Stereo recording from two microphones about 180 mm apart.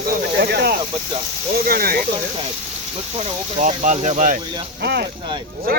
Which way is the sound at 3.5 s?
40° right (ahead or behind).